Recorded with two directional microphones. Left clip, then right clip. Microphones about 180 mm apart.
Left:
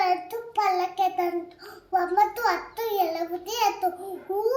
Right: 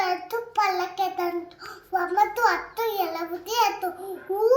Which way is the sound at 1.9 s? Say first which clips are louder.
Even; 20° left (ahead or behind).